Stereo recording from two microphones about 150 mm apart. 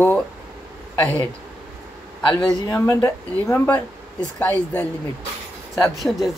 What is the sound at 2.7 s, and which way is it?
Speech, 20° left (ahead or behind).